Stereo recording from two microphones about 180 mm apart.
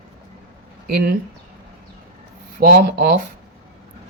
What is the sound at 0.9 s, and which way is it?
Speech, 55° right (ahead or behind).